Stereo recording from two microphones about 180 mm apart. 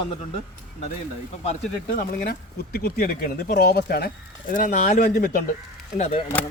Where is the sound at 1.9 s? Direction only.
55° left (ahead or behind).